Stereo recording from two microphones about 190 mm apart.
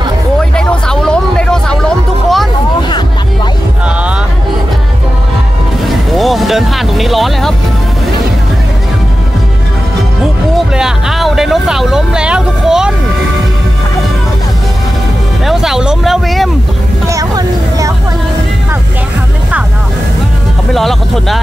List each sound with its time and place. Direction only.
0.6 s hubbub: 5° left (ahead or behind)
6.1 s vehicle: centre (ahead or behind)
10.7 s vehicle: centre (ahead or behind)
15.4 s music: centre (ahead or behind)
17.1 s vehicle: 20° right (ahead or behind)
20.7 s vehicle: centre (ahead or behind)